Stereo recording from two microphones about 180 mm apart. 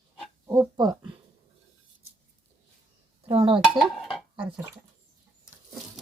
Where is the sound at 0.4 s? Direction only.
15° right (ahead or behind).